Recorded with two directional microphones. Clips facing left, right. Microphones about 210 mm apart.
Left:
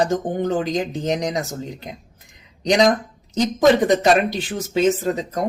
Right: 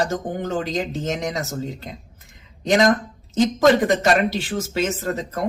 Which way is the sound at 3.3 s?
15° left (ahead or behind).